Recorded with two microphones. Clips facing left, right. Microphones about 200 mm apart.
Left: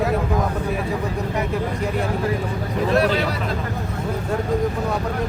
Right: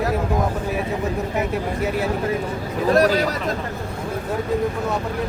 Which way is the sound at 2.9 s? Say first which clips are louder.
Right 2 dB; 40° right (ahead or behind).